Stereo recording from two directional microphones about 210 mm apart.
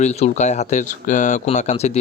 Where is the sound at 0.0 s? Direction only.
35° left (ahead or behind).